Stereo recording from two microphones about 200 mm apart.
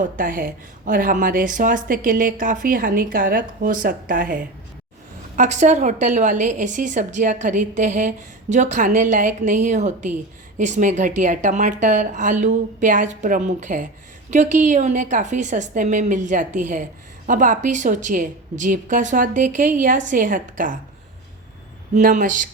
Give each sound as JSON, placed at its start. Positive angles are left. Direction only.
{"t": 0.0, "sound": "a woman's voice", "side_deg": -45}
{"t": 21.9, "sound": "a woman's voice", "side_deg": -40}